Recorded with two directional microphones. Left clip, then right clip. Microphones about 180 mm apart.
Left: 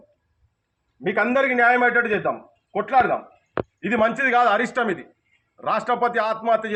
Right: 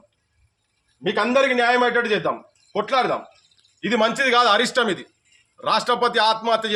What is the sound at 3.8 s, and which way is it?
A man's voice, 25° right (ahead or behind).